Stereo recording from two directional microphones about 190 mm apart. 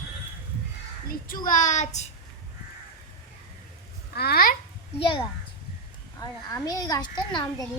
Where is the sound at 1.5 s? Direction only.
40° left (ahead or behind).